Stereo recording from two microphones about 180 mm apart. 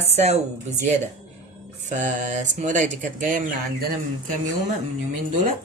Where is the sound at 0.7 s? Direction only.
40° right (ahead or behind).